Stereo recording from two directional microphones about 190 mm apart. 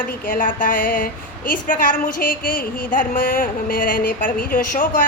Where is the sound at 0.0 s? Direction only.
45° left (ahead or behind).